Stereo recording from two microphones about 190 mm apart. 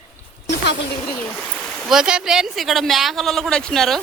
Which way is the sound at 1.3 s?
Centre (ahead or behind).